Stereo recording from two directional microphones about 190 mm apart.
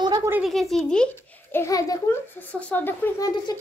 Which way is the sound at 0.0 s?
20° right (ahead or behind).